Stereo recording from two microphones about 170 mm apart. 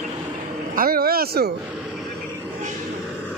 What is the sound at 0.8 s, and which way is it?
Speech, 60° right (ahead or behind).